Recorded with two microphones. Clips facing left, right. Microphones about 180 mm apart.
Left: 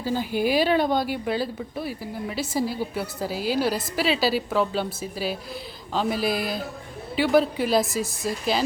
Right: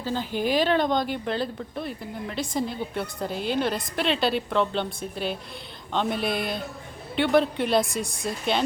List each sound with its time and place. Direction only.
0.0 s speech: 10° left (ahead or behind)